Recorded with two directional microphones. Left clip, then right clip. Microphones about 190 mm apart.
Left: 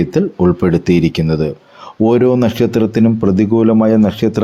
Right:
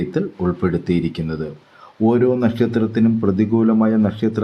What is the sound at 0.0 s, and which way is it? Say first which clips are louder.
Speech: left 8 dB; 30° left (ahead or behind).